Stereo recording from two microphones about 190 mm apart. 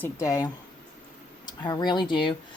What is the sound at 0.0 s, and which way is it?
A man's voice, 15° left (ahead or behind).